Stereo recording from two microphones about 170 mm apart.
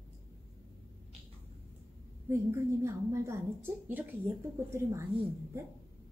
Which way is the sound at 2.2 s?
15° right (ahead or behind).